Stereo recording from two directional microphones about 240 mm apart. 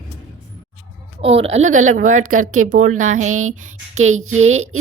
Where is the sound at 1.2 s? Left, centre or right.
Right.